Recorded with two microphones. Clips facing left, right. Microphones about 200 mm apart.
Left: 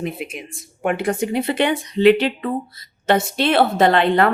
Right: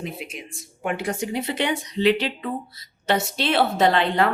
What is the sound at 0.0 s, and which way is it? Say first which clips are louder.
Speech: left 6 dB; 55° left (ahead or behind).